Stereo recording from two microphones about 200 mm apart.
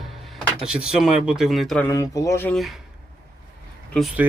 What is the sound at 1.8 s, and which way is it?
Speech, 15° left (ahead or behind).